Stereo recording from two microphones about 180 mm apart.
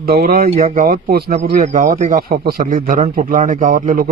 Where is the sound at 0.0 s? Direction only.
60° right (ahead or behind).